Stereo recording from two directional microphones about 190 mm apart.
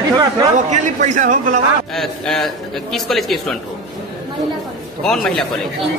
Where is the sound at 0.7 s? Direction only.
40° right (ahead or behind).